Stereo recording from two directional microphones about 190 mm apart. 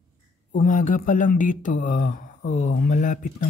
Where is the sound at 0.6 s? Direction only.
45° left (ahead or behind).